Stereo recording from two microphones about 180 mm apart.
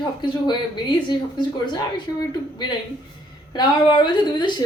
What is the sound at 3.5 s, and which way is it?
A woman's voice, 25° left (ahead or behind).